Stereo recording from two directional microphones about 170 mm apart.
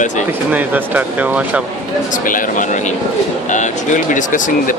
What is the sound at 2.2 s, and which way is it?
Speech, 50° left (ahead or behind).